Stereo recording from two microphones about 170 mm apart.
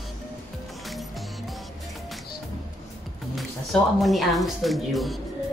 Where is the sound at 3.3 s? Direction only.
Centre (ahead or behind).